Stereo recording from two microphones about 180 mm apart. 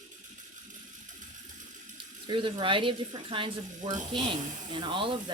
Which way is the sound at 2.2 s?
25° right (ahead or behind).